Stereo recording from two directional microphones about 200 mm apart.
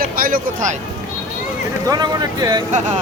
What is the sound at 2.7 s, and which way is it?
Speech, 35° right (ahead or behind).